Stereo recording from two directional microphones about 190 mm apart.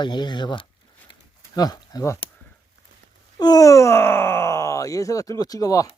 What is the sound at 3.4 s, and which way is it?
Speech, 20° left (ahead or behind).